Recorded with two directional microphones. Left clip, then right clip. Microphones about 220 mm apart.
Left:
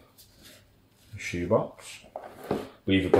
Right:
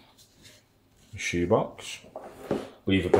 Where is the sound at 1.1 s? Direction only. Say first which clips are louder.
Right 2 dB; 40° right (ahead or behind).